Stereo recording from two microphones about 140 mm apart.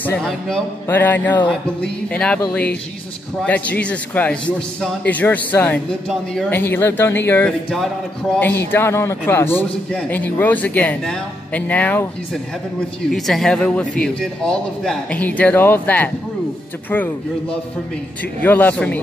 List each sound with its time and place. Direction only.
0.0 s a man's voice: 10° left (ahead or behind)
3.4 s a man's voice: 10° left (ahead or behind)
13.1 s a man's voice: 5° left (ahead or behind)